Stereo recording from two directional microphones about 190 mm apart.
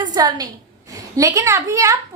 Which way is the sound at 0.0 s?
20° right (ahead or behind).